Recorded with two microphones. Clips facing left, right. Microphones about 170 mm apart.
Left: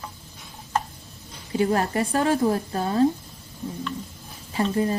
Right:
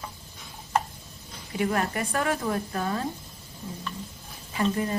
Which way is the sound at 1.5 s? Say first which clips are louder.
Left 5 dB; 30° left (ahead or behind).